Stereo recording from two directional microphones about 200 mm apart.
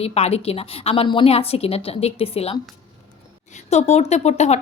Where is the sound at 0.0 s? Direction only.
30° left (ahead or behind).